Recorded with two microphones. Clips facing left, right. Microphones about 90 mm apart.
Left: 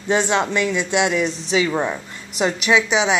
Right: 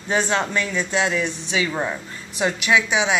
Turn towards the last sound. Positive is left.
turn(degrees=20)  # may be behind; listen again after turning